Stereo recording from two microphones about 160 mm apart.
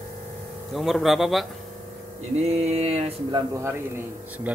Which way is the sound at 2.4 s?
40° right (ahead or behind).